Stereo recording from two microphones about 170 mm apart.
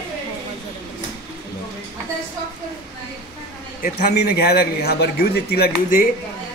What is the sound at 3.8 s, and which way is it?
A man's voice, 55° left (ahead or behind).